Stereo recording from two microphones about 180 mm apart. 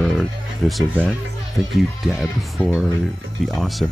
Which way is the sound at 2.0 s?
Centre (ahead or behind).